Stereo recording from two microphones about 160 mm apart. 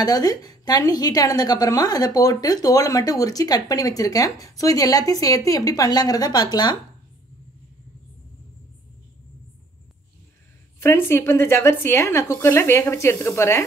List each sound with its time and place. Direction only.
0.0 s a woman's voice: 25° left (ahead or behind)
10.8 s a woman's voice: 15° left (ahead or behind)